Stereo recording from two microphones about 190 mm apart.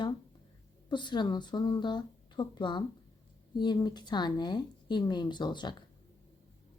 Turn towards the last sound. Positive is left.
turn(degrees=25)  # may be behind; listen again after turning